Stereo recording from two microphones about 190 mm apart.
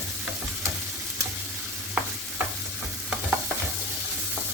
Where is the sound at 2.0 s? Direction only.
5° right (ahead or behind).